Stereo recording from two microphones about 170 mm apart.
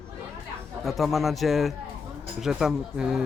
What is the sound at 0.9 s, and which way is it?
Speech, centre (ahead or behind).